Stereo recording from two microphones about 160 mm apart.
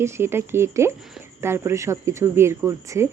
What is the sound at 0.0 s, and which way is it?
Speech, 15° right (ahead or behind).